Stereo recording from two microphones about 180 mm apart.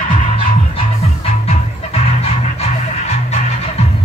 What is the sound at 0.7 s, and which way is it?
Music, 35° left (ahead or behind).